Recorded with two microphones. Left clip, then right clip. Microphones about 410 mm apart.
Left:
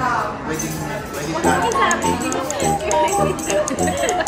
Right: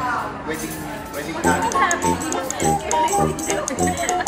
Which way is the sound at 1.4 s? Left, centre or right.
Centre.